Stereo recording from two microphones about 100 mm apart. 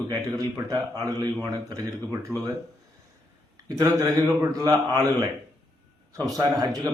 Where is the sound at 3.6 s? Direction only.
35° right (ahead or behind).